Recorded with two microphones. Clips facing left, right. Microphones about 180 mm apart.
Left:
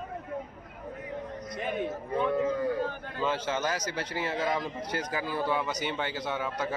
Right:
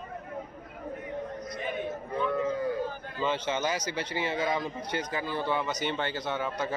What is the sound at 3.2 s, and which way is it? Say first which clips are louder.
A man's voice: even; 5° left (ahead or behind).